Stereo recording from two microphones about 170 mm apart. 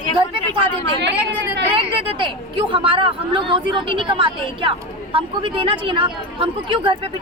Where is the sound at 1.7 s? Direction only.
30° right (ahead or behind).